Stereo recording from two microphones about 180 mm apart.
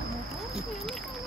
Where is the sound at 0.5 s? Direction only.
Centre (ahead or behind).